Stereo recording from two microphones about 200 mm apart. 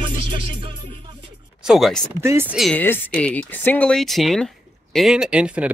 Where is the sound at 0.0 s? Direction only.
25° right (ahead or behind).